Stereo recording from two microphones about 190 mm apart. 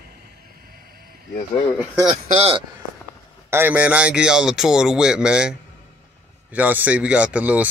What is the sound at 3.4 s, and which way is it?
Speech, 10° right (ahead or behind).